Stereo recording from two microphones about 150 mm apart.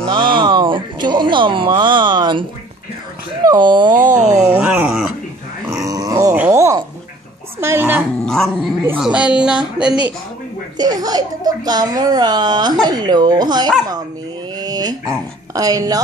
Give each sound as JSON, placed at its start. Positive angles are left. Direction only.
{"t": 0.1, "sound": "speech", "side_deg": -35}
{"t": 3.4, "sound": "a child's voice", "side_deg": -30}
{"t": 4.4, "sound": "a sound", "side_deg": -5}
{"t": 5.7, "sound": "dog", "side_deg": -20}
{"t": 6.3, "sound": "a sound", "side_deg": -15}
{"t": 7.6, "sound": "dog", "side_deg": -15}
{"t": 8.3, "sound": "speech", "side_deg": 0}
{"t": 10.8, "sound": "a child's voice", "side_deg": -25}
{"t": 14.6, "sound": "dog", "side_deg": -25}
{"t": 15.5, "sound": "a child's voice", "side_deg": -25}